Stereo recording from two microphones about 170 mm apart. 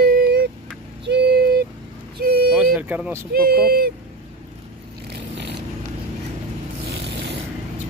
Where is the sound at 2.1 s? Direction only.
65° right (ahead or behind).